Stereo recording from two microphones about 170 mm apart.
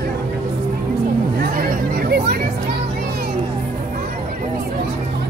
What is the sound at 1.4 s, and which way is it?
Hubbub, 60° right (ahead or behind).